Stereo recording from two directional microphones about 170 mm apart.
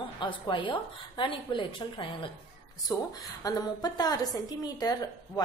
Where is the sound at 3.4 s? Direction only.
20° left (ahead or behind).